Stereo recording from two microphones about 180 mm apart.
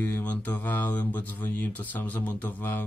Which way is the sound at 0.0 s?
10° left (ahead or behind).